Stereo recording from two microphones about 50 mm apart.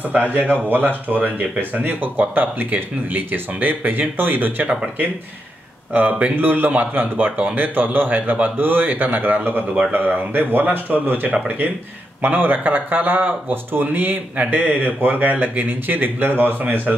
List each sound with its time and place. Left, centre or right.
0.4 s speech: right
5.9 s speech: right
6.3 s speech: right